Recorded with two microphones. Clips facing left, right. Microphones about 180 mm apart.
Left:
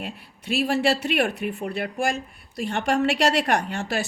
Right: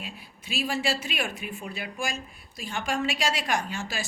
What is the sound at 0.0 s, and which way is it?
Speech, 65° left (ahead or behind).